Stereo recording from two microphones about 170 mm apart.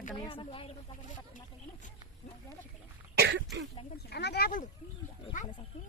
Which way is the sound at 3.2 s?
90° right.